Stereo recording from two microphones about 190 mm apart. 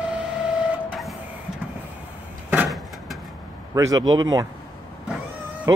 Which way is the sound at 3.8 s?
20° right (ahead or behind).